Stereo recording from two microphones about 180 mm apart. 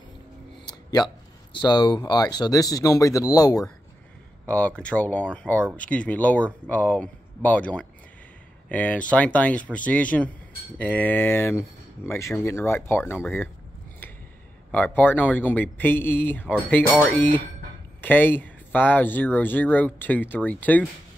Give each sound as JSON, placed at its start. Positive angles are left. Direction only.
{"t": 0.7, "sound": "speech", "side_deg": 20}
{"t": 4.5, "sound": "speech", "side_deg": 5}
{"t": 14.7, "sound": "speech", "side_deg": 10}
{"t": 18.0, "sound": "speech", "side_deg": 10}